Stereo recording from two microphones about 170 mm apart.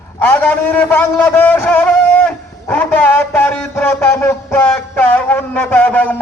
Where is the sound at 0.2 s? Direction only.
10° left (ahead or behind).